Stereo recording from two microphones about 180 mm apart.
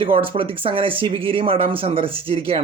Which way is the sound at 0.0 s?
30° right (ahead or behind).